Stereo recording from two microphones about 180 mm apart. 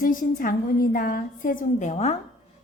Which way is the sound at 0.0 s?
50° left (ahead or behind).